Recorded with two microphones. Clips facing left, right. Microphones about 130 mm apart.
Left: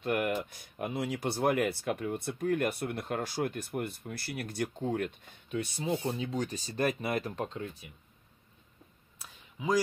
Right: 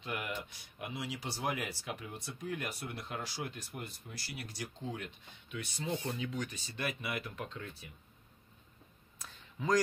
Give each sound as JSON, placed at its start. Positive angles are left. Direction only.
{"t": 0.0, "sound": "speech", "side_deg": 50}
{"t": 5.9, "sound": "speech", "side_deg": 30}
{"t": 9.2, "sound": "a sound", "side_deg": 10}